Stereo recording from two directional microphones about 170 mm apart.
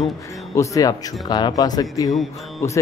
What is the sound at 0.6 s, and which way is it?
Speech, 20° left (ahead or behind).